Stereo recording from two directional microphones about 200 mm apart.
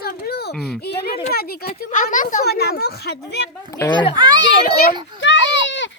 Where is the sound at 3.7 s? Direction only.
20° left (ahead or behind).